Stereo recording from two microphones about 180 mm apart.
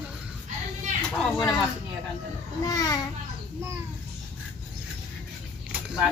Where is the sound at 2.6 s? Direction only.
20° left (ahead or behind).